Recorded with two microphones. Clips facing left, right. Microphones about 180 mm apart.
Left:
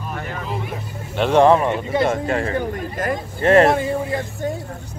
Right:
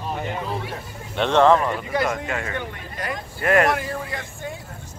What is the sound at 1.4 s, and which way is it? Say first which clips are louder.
Speech: left 3 dB; 15° left (ahead or behind).